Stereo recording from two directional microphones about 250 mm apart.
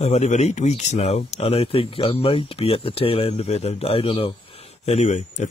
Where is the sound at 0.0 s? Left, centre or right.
Left.